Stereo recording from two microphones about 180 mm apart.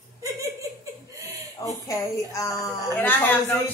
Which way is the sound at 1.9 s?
15° left (ahead or behind).